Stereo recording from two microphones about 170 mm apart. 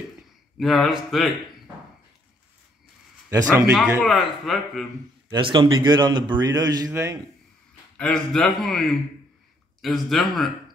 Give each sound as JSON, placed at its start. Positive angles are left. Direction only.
{"t": 0.6, "sound": "a man's voice", "side_deg": 0}
{"t": 3.3, "sound": "a man's voice", "side_deg": -15}
{"t": 4.0, "sound": "a man's voice", "side_deg": 0}
{"t": 5.3, "sound": "a man's voice", "side_deg": -30}
{"t": 8.0, "sound": "a man's voice", "side_deg": 5}